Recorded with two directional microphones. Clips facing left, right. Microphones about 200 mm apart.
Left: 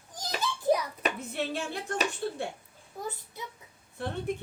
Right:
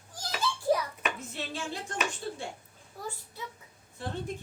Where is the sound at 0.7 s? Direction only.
20° left (ahead or behind).